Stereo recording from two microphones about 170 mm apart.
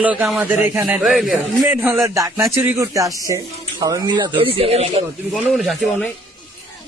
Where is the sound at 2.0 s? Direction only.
20° right (ahead or behind).